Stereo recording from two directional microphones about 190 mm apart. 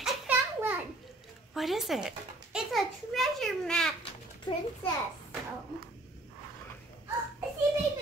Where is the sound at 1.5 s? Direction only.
Centre (ahead or behind).